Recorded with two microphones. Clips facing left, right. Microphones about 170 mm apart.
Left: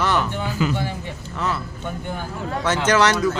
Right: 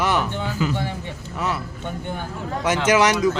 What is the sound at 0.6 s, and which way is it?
Speech, 90° left.